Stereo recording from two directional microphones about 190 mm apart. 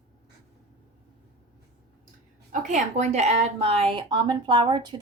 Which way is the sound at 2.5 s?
40° right (ahead or behind).